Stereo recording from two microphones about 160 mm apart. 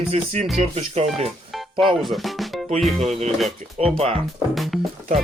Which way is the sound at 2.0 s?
Centre (ahead or behind).